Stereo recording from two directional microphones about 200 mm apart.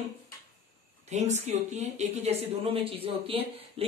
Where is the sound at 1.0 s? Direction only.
35° right (ahead or behind).